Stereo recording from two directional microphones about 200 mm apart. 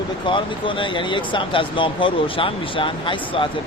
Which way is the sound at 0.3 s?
25° left (ahead or behind).